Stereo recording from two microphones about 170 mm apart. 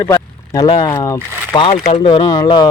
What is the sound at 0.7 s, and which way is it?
Speech, 25° left (ahead or behind).